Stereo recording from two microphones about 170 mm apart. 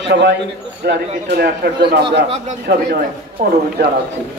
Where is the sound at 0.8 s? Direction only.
70° right (ahead or behind).